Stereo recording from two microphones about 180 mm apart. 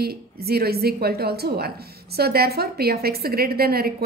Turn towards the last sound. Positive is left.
turn(degrees=-60)  # may be behind; listen again after turning